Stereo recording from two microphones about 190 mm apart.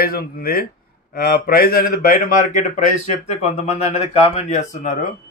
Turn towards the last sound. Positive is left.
turn(degrees=40)  # may be behind; listen again after turning